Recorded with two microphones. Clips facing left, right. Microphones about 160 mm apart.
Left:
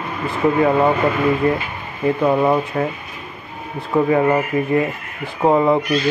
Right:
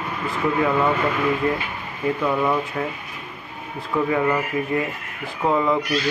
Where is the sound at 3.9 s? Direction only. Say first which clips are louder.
Left 5 dB; 35° left (ahead or behind).